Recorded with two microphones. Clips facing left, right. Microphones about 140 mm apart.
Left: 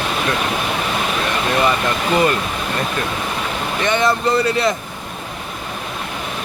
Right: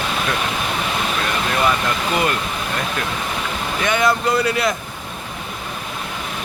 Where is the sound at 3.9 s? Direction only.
Centre (ahead or behind).